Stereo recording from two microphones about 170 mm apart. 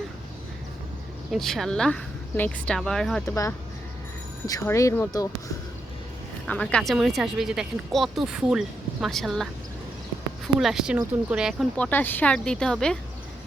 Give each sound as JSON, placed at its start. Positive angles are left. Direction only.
{"t": 1.3, "sound": "speech", "side_deg": 0}
{"t": 3.2, "sound": "speech", "side_deg": 20}
{"t": 6.5, "sound": "speech", "side_deg": 5}
{"t": 11.8, "sound": "speech", "side_deg": 10}